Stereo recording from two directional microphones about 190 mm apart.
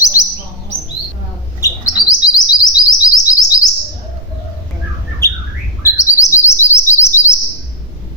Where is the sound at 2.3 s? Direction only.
20° left (ahead or behind).